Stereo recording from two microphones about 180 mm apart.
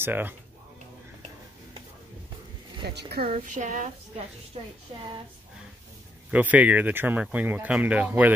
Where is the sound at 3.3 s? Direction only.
45° right (ahead or behind).